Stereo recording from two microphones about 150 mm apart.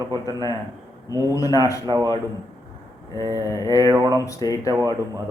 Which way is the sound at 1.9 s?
25° right (ahead or behind).